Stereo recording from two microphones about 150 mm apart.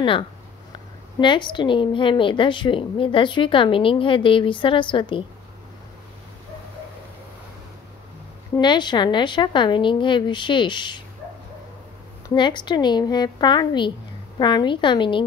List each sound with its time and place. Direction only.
1.2 s a woman's voice: 30° left (ahead or behind)
8.5 s a woman's voice: 30° left (ahead or behind)
12.4 s a woman's voice: 30° left (ahead or behind)